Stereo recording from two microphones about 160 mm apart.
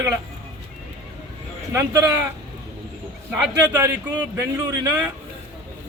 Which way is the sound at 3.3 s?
15° right (ahead or behind).